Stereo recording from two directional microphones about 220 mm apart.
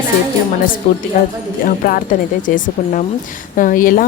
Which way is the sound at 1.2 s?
35° left (ahead or behind).